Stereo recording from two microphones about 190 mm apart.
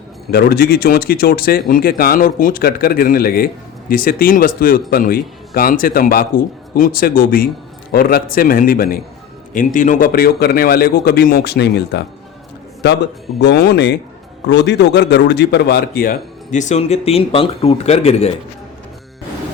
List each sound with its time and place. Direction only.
0.3 s a man's voice: 55° left (ahead or behind); by 18.3 s 35° left (ahead or behind)